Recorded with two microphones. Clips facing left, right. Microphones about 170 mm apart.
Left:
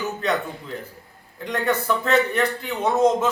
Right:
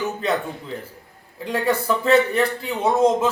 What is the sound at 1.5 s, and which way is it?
Speech, 10° right (ahead or behind).